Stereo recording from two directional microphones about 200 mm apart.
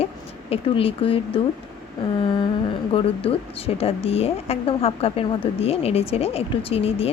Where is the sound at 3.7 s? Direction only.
30° left (ahead or behind).